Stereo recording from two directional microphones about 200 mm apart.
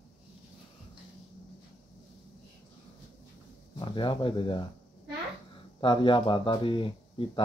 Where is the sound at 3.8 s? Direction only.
25° left (ahead or behind).